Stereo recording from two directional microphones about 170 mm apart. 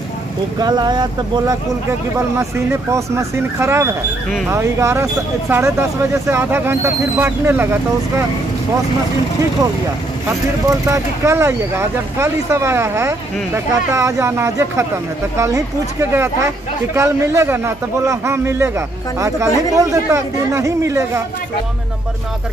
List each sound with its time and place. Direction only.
0.6 s speech: 25° right (ahead or behind)
10.7 s speech: 15° right (ahead or behind)